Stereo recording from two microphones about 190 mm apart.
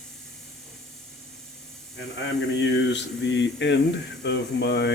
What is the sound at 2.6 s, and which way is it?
Speech, 65° left (ahead or behind).